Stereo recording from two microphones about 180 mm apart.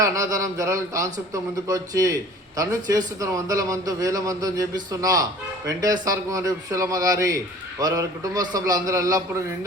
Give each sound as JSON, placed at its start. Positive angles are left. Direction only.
{"t": 0.0, "sound": "a man's voice", "side_deg": -20}